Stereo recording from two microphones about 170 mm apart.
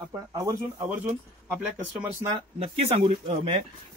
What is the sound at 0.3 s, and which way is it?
Speech, 20° right (ahead or behind).